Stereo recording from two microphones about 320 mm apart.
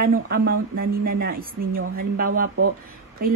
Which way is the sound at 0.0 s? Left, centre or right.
Right.